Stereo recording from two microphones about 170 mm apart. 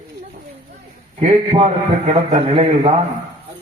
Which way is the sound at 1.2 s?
35° right (ahead or behind).